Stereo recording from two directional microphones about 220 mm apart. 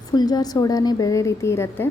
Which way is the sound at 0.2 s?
20° left (ahead or behind).